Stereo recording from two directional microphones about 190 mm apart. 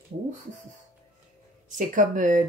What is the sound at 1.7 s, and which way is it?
Speech, 45° right (ahead or behind).